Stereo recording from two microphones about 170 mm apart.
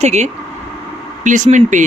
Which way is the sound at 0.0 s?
40° right (ahead or behind).